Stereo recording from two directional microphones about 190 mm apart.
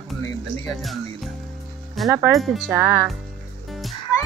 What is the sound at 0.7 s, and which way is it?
Speech, centre (ahead or behind).